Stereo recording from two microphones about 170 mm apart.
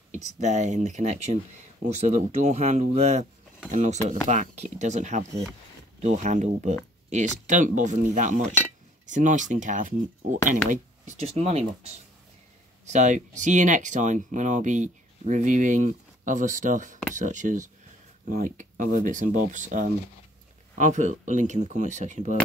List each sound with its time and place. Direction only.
0.1 s speech: 45° right (ahead or behind)